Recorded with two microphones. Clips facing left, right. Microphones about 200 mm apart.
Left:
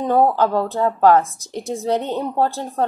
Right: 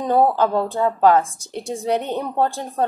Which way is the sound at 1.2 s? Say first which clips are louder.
Left 1 dB; 30° right (ahead or behind).